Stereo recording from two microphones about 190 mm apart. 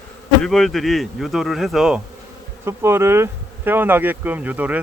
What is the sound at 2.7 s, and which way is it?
Speech, 15° right (ahead or behind).